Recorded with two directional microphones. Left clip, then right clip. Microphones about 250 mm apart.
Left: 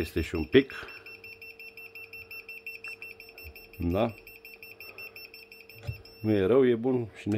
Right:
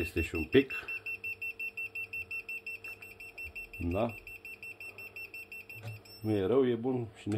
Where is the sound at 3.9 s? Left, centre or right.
Left.